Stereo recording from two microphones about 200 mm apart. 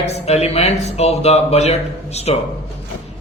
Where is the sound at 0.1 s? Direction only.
30° left (ahead or behind).